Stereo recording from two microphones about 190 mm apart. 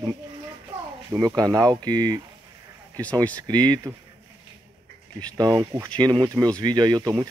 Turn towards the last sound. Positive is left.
turn(degrees=-20)  # may be behind; listen again after turning